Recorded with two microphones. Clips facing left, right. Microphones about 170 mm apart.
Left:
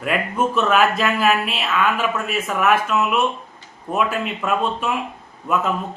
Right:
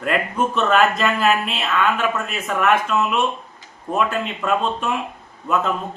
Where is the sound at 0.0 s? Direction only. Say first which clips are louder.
Even; 5° left (ahead or behind).